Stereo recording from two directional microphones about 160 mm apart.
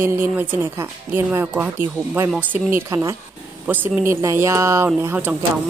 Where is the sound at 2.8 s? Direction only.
15° right (ahead or behind).